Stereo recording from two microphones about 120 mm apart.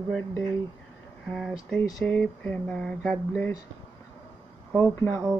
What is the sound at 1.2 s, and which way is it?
Speech, centre (ahead or behind).